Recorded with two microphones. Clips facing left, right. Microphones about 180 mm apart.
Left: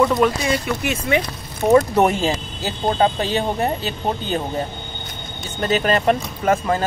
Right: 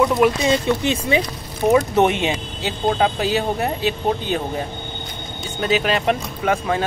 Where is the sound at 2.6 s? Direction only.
5° right (ahead or behind).